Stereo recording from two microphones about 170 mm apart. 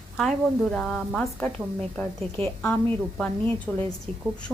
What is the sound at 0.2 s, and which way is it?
A woman's voice, centre (ahead or behind).